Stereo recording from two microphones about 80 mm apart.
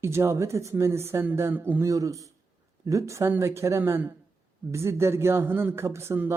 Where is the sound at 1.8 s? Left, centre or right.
Right.